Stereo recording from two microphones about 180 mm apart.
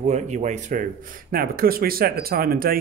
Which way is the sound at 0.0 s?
40° right (ahead or behind).